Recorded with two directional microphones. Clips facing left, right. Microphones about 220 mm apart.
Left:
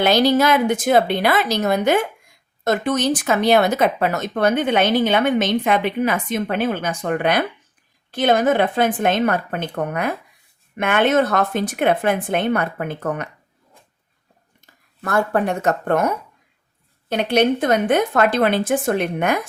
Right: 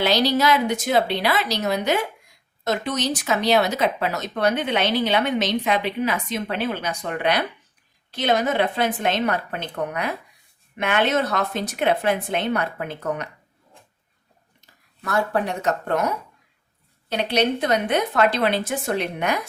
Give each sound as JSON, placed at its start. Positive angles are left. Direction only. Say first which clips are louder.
{"t": 0.0, "sound": "speech", "louder": "left 4 dB", "side_deg": 50}
{"t": 15.0, "sound": "speech", "louder": "left 4 dB", "side_deg": 50}